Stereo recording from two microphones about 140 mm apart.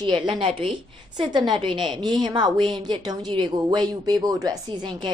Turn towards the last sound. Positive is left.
turn(degrees=-30)  # may be behind; listen again after turning